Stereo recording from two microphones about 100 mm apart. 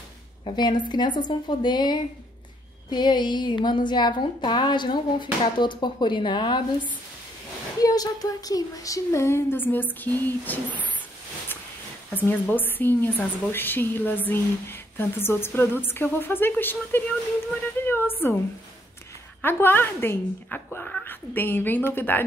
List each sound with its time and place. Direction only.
0.5 s speech: 50° left (ahead or behind)
7.8 s a woman's voice: 40° left (ahead or behind); by 10.9 s 15° left (ahead or behind)
12.1 s a woman's voice: 20° left (ahead or behind)
17.8 s a sound: 20° left (ahead or behind)
19.4 s a woman's voice: 20° left (ahead or behind)